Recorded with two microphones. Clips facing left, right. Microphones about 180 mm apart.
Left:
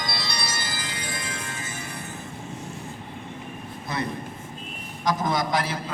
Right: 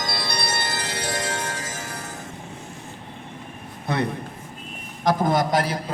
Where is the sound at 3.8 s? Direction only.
65° right (ahead or behind).